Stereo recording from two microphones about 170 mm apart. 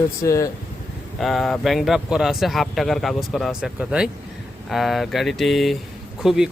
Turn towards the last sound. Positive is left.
turn(degrees=0)  # may be behind; listen again after turning